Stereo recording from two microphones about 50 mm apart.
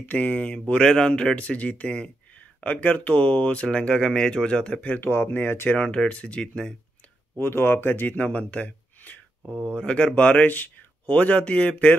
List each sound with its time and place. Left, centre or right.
0.1 s speech: left
4.8 s speech: left
5.8 s speech: left
7.3 s speech: left